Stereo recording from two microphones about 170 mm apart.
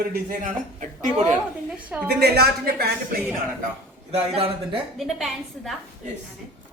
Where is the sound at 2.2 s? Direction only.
70° right (ahead or behind).